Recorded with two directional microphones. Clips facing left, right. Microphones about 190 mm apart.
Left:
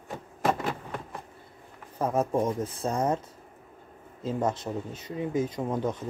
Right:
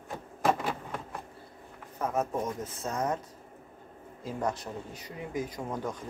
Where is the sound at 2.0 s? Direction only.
30° left (ahead or behind).